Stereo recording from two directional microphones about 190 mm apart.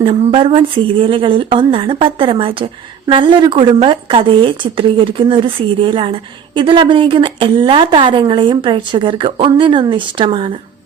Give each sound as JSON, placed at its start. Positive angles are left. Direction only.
{"t": 0.0, "sound": "speech", "side_deg": -30}